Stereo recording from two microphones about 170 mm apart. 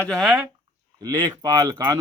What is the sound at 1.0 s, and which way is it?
Speech, 25° right (ahead or behind).